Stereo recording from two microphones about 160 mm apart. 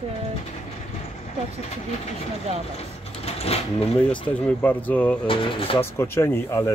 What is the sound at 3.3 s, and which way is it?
Speech, 40° left (ahead or behind).